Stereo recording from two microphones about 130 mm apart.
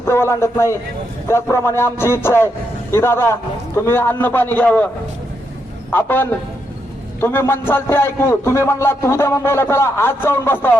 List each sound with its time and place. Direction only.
0.0 s a man's voice: 20° left (ahead or behind)
5.9 s a man's voice: 15° left (ahead or behind)